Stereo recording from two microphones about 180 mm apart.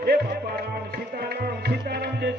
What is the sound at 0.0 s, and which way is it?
Music, 60° right (ahead or behind).